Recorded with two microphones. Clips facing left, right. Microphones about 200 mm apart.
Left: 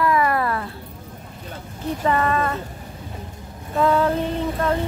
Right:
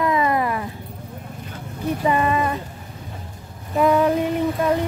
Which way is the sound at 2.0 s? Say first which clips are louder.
Even; 15° right (ahead or behind).